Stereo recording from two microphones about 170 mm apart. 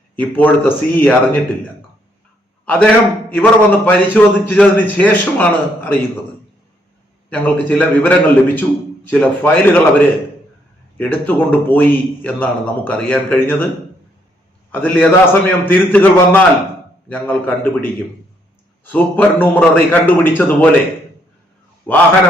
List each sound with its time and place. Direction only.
0.2 s a man's voice: 10° left (ahead or behind)
2.6 s a man's voice: 10° left (ahead or behind)
7.3 s a man's voice: 10° left (ahead or behind)
14.7 s a man's voice: 10° left (ahead or behind)
18.9 s a man's voice: 10° left (ahead or behind)
21.9 s a man's voice: 10° left (ahead or behind)